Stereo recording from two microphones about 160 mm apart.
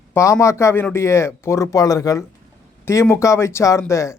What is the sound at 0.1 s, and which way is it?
A man's voice, 20° left (ahead or behind).